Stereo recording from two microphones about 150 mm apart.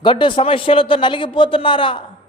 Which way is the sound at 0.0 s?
35° left (ahead or behind).